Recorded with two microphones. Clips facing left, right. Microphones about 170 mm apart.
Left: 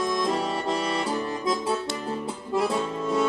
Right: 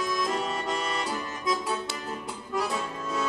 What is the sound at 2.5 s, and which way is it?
Accordion, 25° left (ahead or behind).